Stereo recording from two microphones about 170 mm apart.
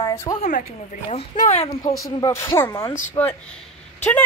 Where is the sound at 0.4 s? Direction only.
45° left (ahead or behind).